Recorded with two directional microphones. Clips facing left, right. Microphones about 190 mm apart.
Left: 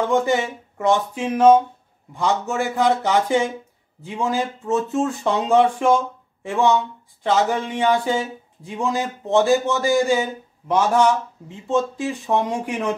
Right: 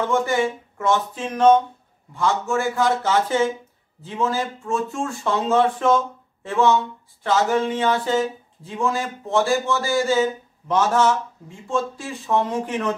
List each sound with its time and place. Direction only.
0.1 s speech: 20° left (ahead or behind)